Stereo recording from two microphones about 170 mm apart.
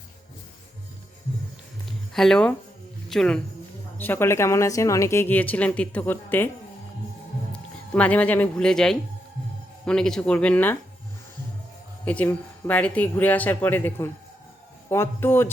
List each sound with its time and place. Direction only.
2.1 s speech: 5° left (ahead or behind)
7.5 s speech: 10° left (ahead or behind)
12.0 s speech: 10° left (ahead or behind)